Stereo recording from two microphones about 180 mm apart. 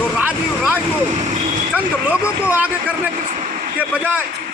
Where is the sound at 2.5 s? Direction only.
10° right (ahead or behind).